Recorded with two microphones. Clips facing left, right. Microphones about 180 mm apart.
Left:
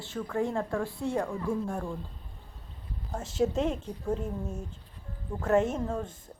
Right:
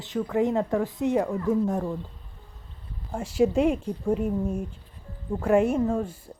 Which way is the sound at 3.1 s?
10° right (ahead or behind).